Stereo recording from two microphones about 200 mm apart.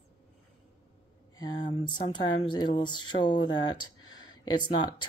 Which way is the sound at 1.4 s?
20° left (ahead or behind).